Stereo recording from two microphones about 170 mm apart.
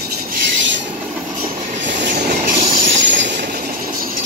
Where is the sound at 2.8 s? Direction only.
90° right.